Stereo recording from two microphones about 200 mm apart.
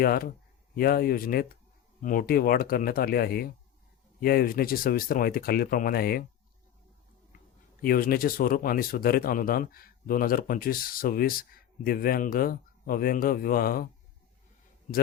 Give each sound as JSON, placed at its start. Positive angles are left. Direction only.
{"t": 0.0, "sound": "speech", "side_deg": 50}
{"t": 7.3, "sound": "speech", "side_deg": 45}